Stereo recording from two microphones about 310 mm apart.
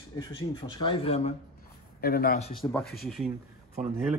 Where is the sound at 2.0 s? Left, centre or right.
Left.